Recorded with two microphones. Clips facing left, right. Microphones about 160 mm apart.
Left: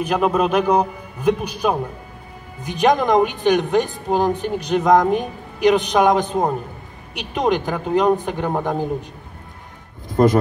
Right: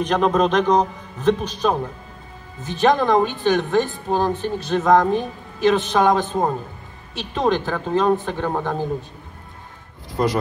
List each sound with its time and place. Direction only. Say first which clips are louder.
0.0 s a woman's voice: even; 10° left (ahead or behind)
10.0 s speech: left 6 dB; 50° left (ahead or behind)